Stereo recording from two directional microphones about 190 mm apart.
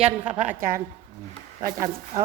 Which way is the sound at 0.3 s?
45° right (ahead or behind).